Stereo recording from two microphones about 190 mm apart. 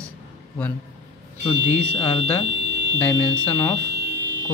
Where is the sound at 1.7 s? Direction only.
10° left (ahead or behind).